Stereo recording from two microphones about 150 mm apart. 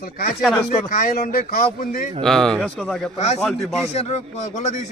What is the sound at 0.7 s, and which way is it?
Speech, 60° left (ahead or behind).